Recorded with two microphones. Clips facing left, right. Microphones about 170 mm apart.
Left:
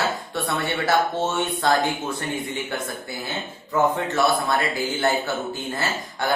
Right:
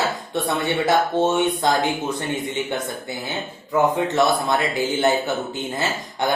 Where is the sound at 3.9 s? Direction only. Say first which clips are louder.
Right 2 dB; 20° right (ahead or behind).